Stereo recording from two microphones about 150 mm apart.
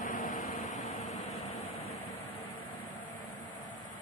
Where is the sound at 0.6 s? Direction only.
55° left (ahead or behind).